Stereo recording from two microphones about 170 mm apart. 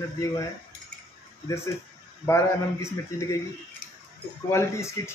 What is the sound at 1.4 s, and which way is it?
Speech, 15° left (ahead or behind).